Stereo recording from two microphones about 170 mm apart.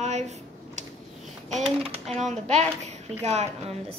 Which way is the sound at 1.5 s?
35° right (ahead or behind).